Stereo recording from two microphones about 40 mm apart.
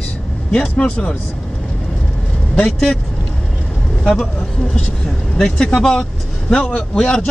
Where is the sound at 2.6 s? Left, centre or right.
Centre.